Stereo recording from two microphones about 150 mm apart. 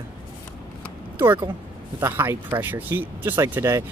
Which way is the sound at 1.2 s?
15° right (ahead or behind).